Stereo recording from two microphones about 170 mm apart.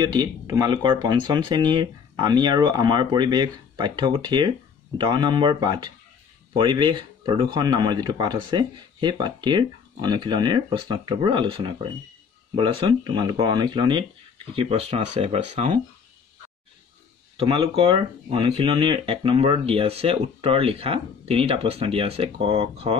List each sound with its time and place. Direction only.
0.0 s speech: 25° right (ahead or behind); by 15.8 s 40° right (ahead or behind)
17.4 s speech: 30° right (ahead or behind)